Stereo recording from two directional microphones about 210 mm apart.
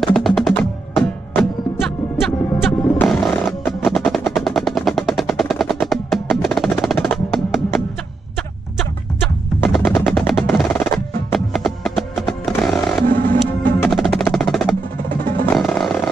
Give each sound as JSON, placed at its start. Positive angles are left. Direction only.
{"t": 0.0, "sound": "music", "side_deg": 0}
{"t": 9.6, "sound": "music", "side_deg": 0}
{"t": 13.1, "sound": "music", "side_deg": -40}
{"t": 13.4, "sound": "music", "side_deg": 0}
{"t": 14.2, "sound": "percussion", "side_deg": 0}
{"t": 15.5, "sound": "music", "side_deg": 0}